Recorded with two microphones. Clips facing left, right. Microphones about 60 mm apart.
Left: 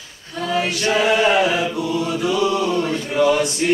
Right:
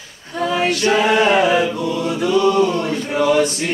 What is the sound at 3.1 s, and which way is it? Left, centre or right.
Male singing, centre.